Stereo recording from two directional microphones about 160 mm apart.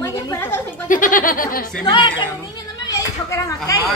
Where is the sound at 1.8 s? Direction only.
30° left (ahead or behind).